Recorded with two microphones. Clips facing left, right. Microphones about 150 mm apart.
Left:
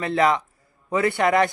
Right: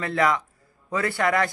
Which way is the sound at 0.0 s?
20° left (ahead or behind).